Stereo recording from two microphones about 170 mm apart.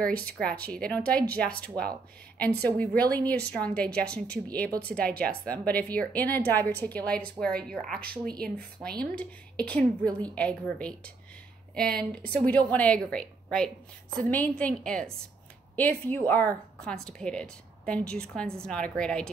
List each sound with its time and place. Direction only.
0.2 s a woman's voice: 5° left (ahead or behind)
12.0 s a woman's voice: 10° left (ahead or behind)